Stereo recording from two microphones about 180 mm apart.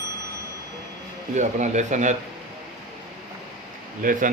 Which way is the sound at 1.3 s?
40° right (ahead or behind).